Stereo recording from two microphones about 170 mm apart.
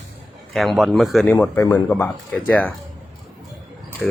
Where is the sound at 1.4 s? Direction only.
15° left (ahead or behind).